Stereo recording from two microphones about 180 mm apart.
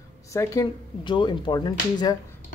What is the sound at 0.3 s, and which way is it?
Speech, 20° left (ahead or behind).